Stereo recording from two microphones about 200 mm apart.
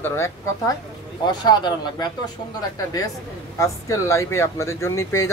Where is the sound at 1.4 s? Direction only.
20° left (ahead or behind).